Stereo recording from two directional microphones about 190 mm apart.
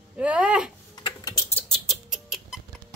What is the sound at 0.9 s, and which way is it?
Typing, 20° left (ahead or behind).